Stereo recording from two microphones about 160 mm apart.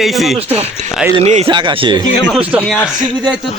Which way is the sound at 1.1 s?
40° right (ahead or behind).